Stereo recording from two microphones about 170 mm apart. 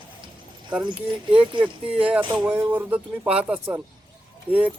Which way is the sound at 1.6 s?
5° right (ahead or behind).